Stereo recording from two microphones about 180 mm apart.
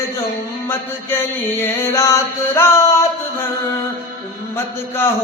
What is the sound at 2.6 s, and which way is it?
Music, 15° left (ahead or behind).